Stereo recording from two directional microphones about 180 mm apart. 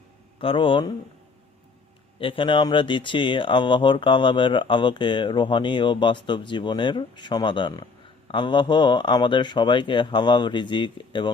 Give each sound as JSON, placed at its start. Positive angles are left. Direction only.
{"t": 0.3, "sound": "speech", "side_deg": 30}
{"t": 2.1, "sound": "speech", "side_deg": 30}